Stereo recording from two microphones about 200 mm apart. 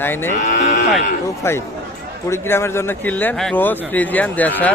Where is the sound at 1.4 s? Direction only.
15° left (ahead or behind).